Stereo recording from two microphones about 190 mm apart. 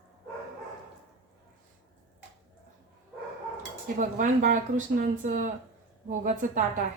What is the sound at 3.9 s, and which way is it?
A woman's voice, 45° right (ahead or behind).